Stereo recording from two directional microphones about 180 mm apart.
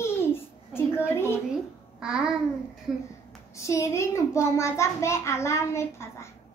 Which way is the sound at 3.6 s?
15° left (ahead or behind).